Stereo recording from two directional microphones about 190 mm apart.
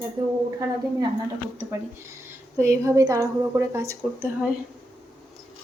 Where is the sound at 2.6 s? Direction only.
15° right (ahead or behind).